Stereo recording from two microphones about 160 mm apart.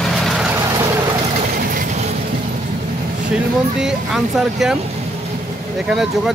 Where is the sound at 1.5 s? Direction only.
65° right (ahead or behind).